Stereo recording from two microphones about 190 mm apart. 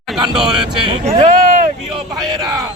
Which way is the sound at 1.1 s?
35° right (ahead or behind).